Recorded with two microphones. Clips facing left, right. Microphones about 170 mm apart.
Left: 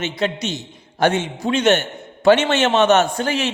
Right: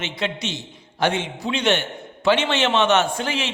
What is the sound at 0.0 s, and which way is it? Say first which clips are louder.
A man's voice: left 4 dB; 40° left (ahead or behind).